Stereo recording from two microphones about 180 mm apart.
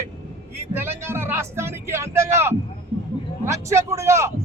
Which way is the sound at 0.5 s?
15° right (ahead or behind).